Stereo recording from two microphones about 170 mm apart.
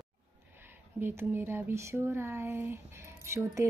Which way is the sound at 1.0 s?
10° right (ahead or behind).